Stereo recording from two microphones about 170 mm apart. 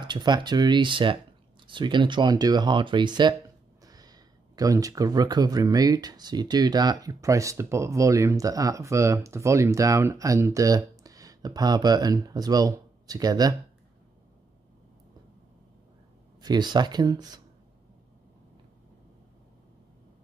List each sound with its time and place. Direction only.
0.0 s speech: 25° right (ahead or behind)
16.3 s speech: 25° right (ahead or behind)